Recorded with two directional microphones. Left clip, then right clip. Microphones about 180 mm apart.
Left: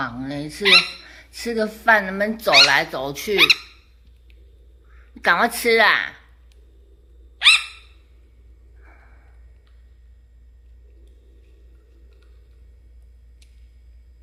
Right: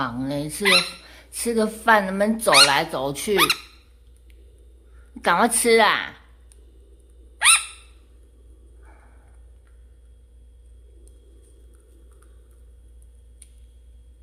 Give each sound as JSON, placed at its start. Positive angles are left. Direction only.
{"t": 0.0, "sound": "speech", "side_deg": -20}
{"t": 0.6, "sound": "speech", "side_deg": -5}
{"t": 1.0, "sound": "speech", "side_deg": -25}
{"t": 5.1, "sound": "a woman's voice", "side_deg": -25}